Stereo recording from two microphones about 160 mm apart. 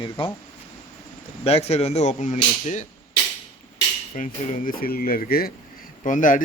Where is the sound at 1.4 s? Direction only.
40° left (ahead or behind).